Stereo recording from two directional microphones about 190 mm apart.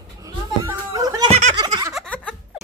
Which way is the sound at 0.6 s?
15° right (ahead or behind).